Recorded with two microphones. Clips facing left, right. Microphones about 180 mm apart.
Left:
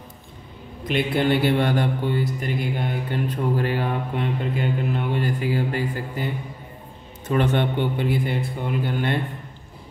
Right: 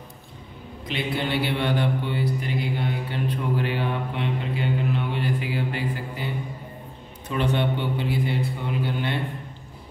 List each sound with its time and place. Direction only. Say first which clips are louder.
0.8 s speech: left 6 dB; 50° left (ahead or behind)